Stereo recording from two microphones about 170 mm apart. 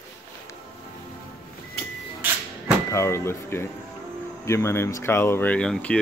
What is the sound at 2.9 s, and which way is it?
Speech, 15° left (ahead or behind).